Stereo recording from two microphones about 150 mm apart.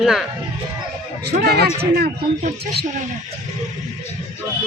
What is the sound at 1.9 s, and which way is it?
Speech, 85° right.